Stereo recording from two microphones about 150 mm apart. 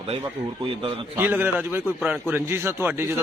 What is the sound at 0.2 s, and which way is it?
Speech, 35° right (ahead or behind).